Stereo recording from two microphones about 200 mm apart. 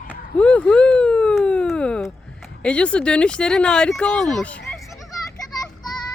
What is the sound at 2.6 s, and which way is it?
Speech, 5° left (ahead or behind).